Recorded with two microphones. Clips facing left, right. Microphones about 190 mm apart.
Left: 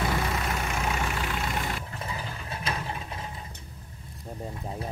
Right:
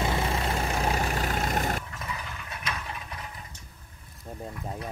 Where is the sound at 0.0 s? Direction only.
25° right (ahead or behind); by 1.9 s 45° right (ahead or behind).